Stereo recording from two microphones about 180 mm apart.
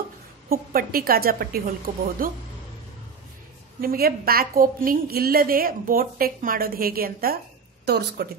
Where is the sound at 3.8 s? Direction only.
55° right (ahead or behind).